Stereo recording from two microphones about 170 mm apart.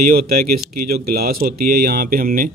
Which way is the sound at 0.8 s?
65° right (ahead or behind).